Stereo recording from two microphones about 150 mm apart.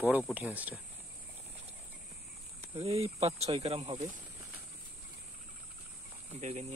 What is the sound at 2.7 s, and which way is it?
Speech, 40° right (ahead or behind).